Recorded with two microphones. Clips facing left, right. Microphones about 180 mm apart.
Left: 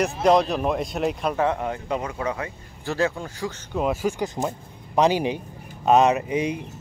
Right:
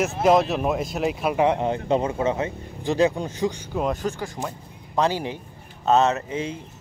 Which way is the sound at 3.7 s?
5° left (ahead or behind).